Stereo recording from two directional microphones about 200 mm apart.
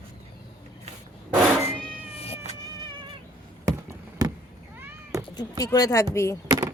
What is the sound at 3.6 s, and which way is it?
Basketball bounce, 15° right (ahead or behind).